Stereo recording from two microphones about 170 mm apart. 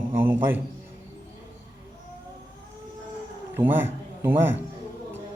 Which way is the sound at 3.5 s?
10° right (ahead or behind).